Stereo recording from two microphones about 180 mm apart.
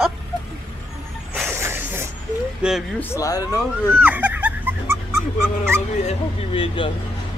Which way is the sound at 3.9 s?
10° right (ahead or behind).